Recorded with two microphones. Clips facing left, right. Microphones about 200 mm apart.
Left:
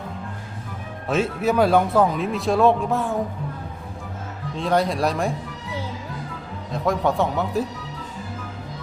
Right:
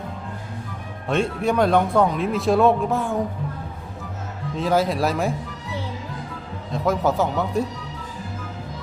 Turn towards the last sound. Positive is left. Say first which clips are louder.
# even
turn(degrees=0)  # may be behind; listen again after turning